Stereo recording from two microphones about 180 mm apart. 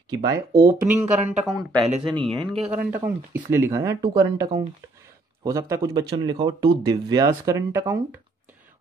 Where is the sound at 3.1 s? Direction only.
10° right (ahead or behind).